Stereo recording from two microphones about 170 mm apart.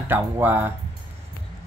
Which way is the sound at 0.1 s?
10° right (ahead or behind).